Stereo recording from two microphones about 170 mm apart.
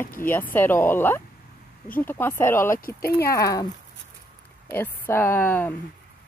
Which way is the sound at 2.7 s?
55° left (ahead or behind).